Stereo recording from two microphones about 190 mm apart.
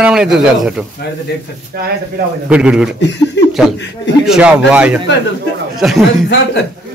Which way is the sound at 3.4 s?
70° left (ahead or behind).